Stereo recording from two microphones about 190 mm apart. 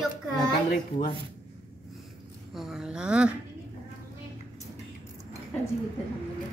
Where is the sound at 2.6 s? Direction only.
5° right (ahead or behind).